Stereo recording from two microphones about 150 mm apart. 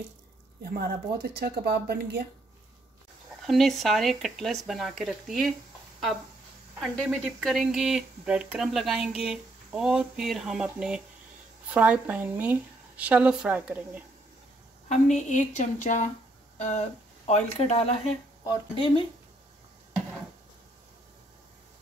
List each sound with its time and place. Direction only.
1.4 s speech: 90° right
3.4 s speech: centre (ahead or behind)
6.8 s a woman's voice: centre (ahead or behind)
14.9 s a woman's voice: 55° left (ahead or behind); by 19.0 s 35° left (ahead or behind)